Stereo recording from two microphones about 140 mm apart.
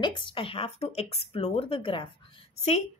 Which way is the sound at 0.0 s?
35° left (ahead or behind).